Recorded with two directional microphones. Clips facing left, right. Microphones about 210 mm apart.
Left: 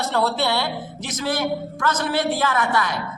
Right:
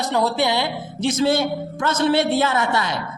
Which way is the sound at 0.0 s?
15° right (ahead or behind).